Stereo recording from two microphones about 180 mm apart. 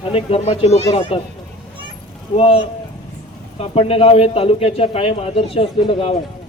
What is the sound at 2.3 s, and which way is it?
Speech, 35° left (ahead or behind).